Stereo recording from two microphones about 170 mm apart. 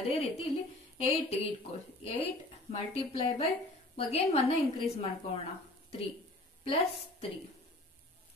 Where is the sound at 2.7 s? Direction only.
35° left (ahead or behind).